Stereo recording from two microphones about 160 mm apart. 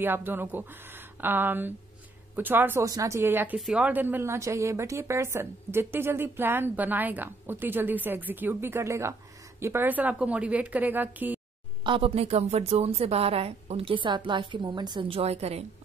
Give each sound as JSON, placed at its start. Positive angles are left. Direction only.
{"t": 0.0, "sound": "a woman's voice", "side_deg": -15}
{"t": 11.8, "sound": "a woman's voice", "side_deg": -35}